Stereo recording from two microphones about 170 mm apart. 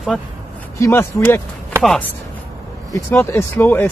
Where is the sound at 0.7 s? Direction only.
20° left (ahead or behind).